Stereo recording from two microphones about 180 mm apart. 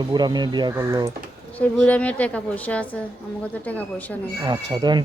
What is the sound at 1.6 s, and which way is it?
A woman's voice, 10° left (ahead or behind).